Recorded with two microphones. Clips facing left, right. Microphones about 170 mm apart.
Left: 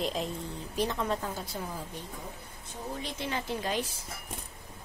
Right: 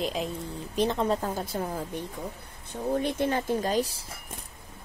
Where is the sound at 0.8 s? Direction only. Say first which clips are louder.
Right 5 dB; 30° right (ahead or behind).